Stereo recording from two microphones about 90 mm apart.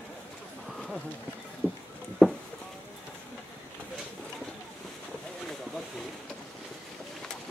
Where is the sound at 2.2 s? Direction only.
5° left (ahead or behind).